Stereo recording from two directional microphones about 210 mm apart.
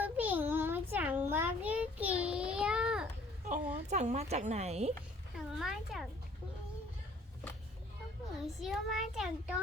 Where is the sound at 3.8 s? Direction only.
35° right (ahead or behind).